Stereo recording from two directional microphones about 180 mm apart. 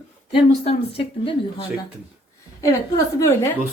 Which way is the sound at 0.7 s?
30° left (ahead or behind).